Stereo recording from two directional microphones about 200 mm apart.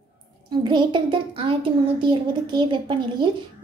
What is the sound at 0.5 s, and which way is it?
A woman's voice, 20° right (ahead or behind).